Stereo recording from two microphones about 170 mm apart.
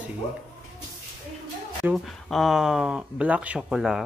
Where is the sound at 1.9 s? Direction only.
Centre (ahead or behind).